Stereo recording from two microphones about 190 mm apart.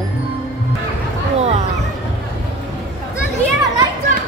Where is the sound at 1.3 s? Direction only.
35° right (ahead or behind).